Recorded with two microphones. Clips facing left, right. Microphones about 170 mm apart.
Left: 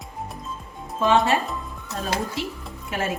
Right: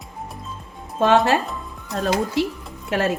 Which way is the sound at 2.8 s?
70° right (ahead or behind).